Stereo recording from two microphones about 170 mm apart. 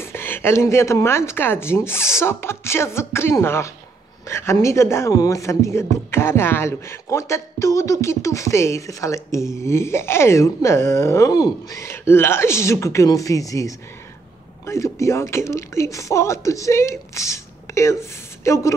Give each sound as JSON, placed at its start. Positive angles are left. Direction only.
{"t": 0.0, "sound": "speech", "side_deg": 15}